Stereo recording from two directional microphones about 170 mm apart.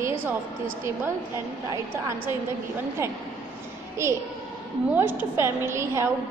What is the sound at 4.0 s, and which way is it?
A woman's voice, 15° right (ahead or behind).